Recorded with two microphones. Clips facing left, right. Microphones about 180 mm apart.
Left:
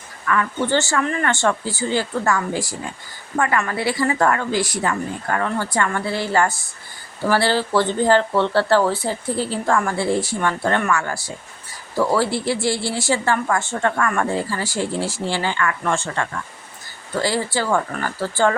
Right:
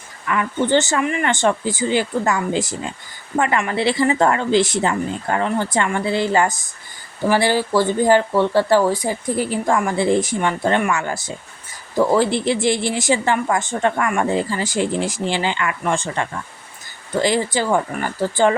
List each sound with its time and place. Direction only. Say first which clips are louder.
0.3 s speech: right 2 dB; 20° right (ahead or behind)